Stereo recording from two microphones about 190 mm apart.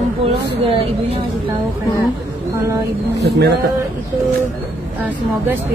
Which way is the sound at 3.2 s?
60° right (ahead or behind).